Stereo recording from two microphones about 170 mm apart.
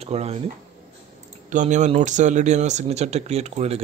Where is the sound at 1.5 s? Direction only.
45° right (ahead or behind).